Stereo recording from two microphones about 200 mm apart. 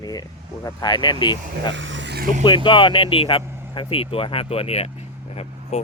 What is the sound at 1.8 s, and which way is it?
Vehicle, 70° right (ahead or behind).